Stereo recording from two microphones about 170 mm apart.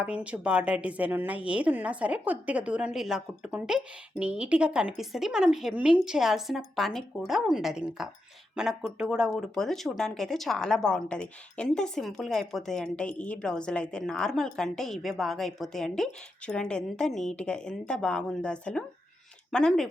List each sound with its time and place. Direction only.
0.0 s a woman's voice: 5° right (ahead or behind)